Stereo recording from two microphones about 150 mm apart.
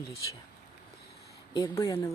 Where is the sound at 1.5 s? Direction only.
25° left (ahead or behind).